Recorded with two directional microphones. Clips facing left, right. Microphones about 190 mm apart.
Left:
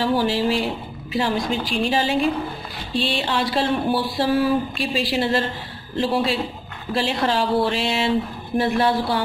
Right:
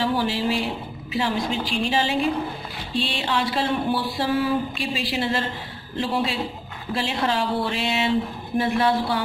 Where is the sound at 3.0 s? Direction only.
35° left (ahead or behind).